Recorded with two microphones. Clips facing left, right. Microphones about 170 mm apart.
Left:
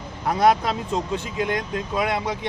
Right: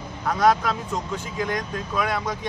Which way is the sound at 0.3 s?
25° left (ahead or behind).